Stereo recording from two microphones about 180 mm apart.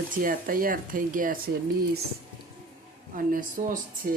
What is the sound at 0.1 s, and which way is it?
Speech, 50° right (ahead or behind).